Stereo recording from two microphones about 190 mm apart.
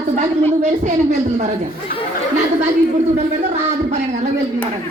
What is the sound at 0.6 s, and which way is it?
Speech, 40° right (ahead or behind).